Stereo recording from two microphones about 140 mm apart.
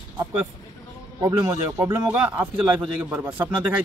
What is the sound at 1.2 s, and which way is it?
Speech, 25° right (ahead or behind).